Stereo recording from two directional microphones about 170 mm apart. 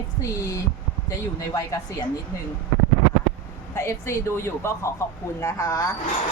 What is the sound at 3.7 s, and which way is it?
Speech, 15° left (ahead or behind).